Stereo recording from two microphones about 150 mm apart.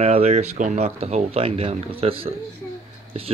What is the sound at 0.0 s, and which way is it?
A woman's voice, 45° right (ahead or behind).